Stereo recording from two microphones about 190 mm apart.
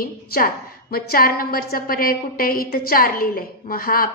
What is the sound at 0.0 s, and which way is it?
A woman's voice, 50° left (ahead or behind).